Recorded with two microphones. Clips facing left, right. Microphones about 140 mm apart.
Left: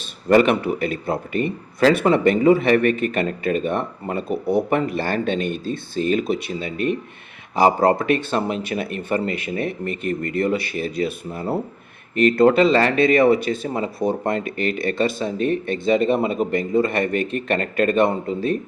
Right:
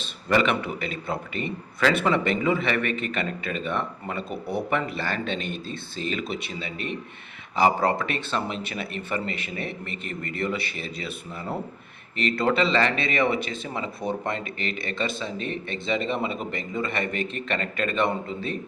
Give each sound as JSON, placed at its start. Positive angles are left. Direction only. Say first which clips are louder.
{"t": 0.3, "sound": "speech", "louder": "left 7 dB", "side_deg": 45}